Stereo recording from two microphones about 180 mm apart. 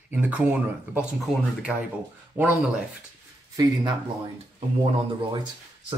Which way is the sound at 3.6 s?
20° right (ahead or behind).